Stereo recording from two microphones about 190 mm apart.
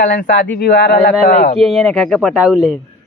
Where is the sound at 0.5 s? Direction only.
65° left (ahead or behind).